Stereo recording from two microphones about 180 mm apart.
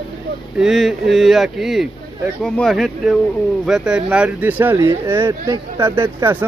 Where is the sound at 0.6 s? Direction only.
Centre (ahead or behind).